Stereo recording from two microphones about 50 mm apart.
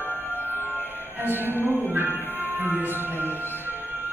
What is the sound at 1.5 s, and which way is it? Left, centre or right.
Music, left.